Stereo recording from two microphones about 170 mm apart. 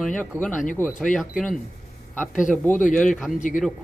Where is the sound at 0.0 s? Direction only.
10° left (ahead or behind).